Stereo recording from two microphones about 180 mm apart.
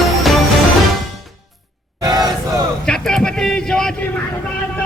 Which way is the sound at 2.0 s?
20° right (ahead or behind).